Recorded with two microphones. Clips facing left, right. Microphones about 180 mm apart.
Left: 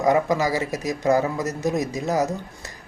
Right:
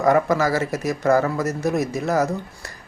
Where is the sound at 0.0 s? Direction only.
15° left (ahead or behind).